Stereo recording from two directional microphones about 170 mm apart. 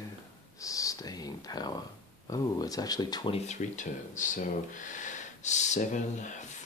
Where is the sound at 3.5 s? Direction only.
45° left (ahead or behind).